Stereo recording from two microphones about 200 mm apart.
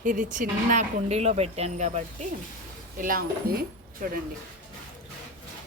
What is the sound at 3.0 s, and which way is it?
A woman's voice, 45° right (ahead or behind).